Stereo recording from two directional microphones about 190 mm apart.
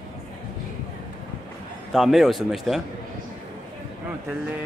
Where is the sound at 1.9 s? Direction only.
Centre (ahead or behind).